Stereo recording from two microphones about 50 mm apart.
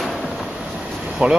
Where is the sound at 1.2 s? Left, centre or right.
Right.